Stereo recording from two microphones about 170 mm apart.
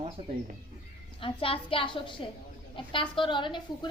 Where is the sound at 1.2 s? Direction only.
30° left (ahead or behind).